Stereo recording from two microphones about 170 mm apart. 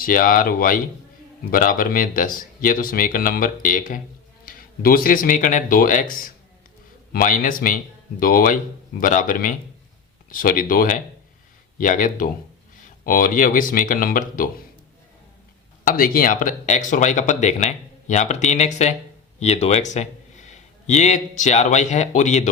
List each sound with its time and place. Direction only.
0.0 s speech: 55° left (ahead or behind)
15.8 s speech: 55° left (ahead or behind)